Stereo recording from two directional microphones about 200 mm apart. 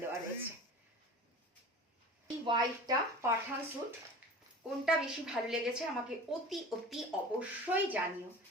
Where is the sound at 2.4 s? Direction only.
20° right (ahead or behind).